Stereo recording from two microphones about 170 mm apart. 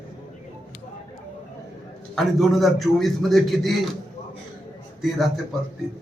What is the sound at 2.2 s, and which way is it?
A man's voice, centre (ahead or behind).